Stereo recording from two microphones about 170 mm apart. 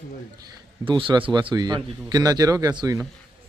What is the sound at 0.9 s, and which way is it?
Speech, 30° right (ahead or behind).